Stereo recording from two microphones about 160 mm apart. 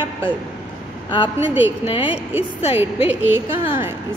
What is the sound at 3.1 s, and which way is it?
Speech, 10° right (ahead or behind).